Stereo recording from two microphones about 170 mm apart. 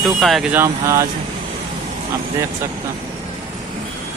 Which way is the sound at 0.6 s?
20° right (ahead or behind).